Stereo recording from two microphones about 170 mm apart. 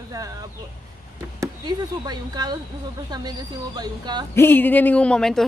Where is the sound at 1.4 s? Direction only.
25° right (ahead or behind).